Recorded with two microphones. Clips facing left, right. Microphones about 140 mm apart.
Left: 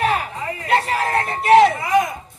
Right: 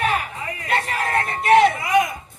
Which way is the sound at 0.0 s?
30° left (ahead or behind).